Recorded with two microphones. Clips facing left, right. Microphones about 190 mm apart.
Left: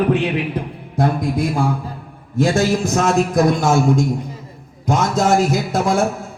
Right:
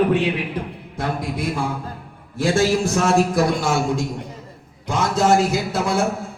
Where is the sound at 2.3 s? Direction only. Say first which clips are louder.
Left 2 dB; 40° left (ahead or behind).